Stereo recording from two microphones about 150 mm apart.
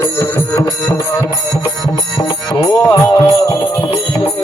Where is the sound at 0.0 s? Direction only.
20° left (ahead or behind).